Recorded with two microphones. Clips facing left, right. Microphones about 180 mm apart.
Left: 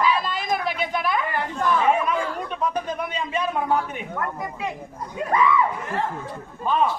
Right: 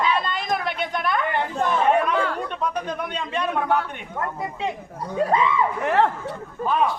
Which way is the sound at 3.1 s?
5° left (ahead or behind).